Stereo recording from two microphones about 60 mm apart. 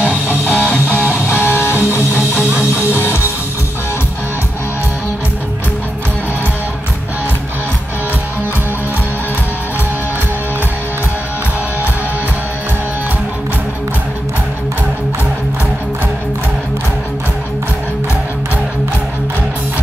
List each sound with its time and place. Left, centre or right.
0.5 s music: left
1.1 s music: left